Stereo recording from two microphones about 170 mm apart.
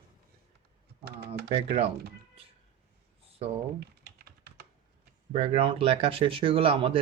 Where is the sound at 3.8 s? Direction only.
65° right (ahead or behind).